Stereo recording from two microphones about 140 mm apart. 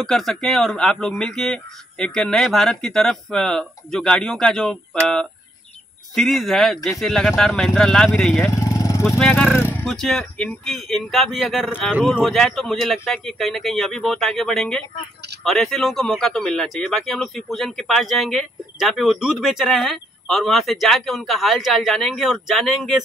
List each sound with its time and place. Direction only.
0.0 s speech: 5° left (ahead or behind)
6.1 s speech: centre (ahead or behind)
8.5 s vehicle: 25° left (ahead or behind)
9.2 s speech: 10° left (ahead or behind)